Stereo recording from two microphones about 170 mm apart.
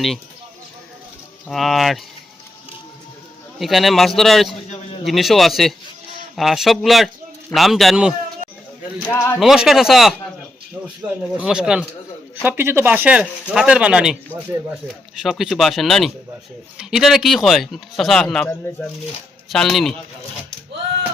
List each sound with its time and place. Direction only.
1.5 s speech: centre (ahead or behind)
3.6 s speech: centre (ahead or behind)
9.0 s speech: 10° left (ahead or behind)
9.4 s speech: centre (ahead or behind)
11.3 s speech: 5° right (ahead or behind)
19.5 s speech: centre (ahead or behind)